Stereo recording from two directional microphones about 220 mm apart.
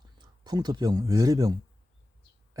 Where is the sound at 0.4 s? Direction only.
20° right (ahead or behind).